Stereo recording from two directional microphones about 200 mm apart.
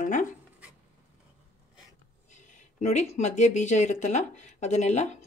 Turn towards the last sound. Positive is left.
turn(degrees=35)  # may be behind; listen again after turning